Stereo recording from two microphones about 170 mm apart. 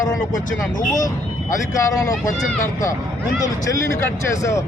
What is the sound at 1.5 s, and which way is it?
Speech, 20° left (ahead or behind).